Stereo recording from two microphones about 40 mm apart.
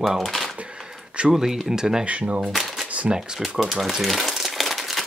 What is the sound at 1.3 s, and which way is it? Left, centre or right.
Speech, centre.